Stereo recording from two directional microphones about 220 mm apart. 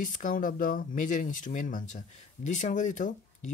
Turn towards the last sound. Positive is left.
turn(degrees=35)  # may be behind; listen again after turning